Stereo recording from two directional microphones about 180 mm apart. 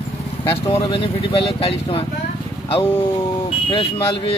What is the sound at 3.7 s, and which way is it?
Speech, 30° left (ahead or behind).